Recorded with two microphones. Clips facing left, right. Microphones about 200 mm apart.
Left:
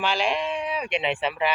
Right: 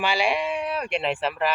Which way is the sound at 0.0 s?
10° right (ahead or behind).